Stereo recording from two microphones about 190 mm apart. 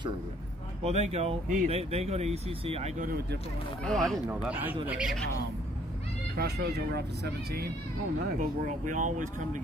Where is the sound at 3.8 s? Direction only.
5° left (ahead or behind).